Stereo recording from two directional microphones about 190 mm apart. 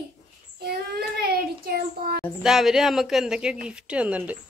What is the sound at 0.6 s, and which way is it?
Child singing, 55° right (ahead or behind).